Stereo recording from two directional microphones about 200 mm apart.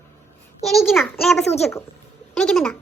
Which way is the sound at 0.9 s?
5° left (ahead or behind).